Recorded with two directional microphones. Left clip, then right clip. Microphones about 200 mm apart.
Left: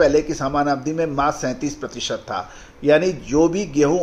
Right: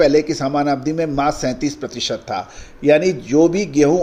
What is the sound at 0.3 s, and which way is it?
Speech, 30° right (ahead or behind).